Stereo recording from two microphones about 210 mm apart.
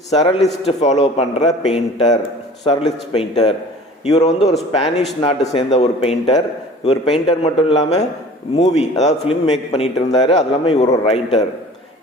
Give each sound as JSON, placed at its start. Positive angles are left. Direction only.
{"t": 0.1, "sound": "a man's voice", "side_deg": 30}